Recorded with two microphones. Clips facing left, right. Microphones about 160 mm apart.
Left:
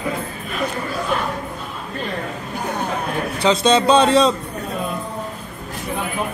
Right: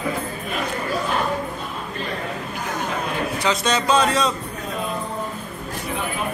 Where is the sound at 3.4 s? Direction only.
25° left (ahead or behind).